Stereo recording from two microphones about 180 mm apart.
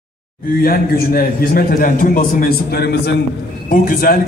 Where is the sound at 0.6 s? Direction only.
55° left (ahead or behind).